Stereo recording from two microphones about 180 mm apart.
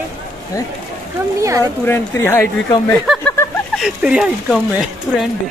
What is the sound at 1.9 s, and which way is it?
Speech, 10° left (ahead or behind).